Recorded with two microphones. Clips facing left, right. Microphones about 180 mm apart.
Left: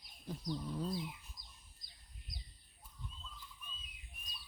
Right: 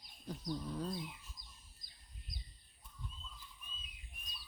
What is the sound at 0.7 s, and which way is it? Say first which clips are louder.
Speech: left 1 dB; 10° left (ahead or behind).